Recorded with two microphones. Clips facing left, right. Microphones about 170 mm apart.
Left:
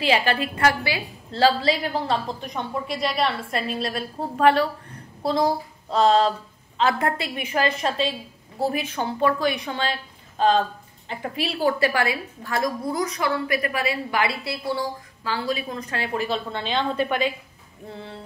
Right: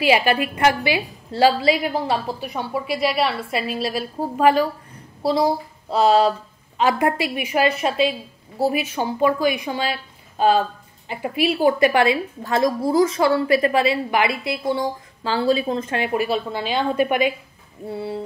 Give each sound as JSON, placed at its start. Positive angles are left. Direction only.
{"t": 0.0, "sound": "a woman's voice", "side_deg": -15}